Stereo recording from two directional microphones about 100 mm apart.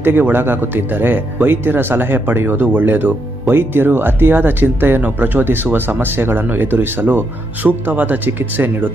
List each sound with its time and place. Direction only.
0.0 s speech: 20° right (ahead or behind)